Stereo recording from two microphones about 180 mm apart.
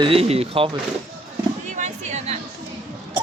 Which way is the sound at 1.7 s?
40° right (ahead or behind).